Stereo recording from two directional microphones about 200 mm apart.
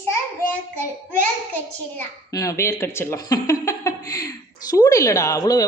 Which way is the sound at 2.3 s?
15° left (ahead or behind).